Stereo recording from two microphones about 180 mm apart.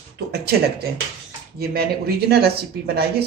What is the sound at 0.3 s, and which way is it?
Speech, 60° right (ahead or behind).